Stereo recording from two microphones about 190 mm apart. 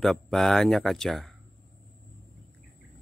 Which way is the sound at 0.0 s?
Centre (ahead or behind).